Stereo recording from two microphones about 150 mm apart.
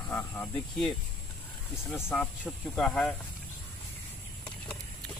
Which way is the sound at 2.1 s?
5° left (ahead or behind).